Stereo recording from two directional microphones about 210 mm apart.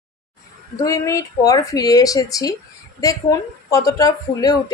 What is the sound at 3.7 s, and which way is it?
A woman's voice, 15° left (ahead or behind).